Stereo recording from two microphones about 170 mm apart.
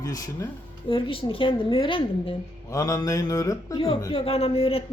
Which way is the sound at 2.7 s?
20° left (ahead or behind).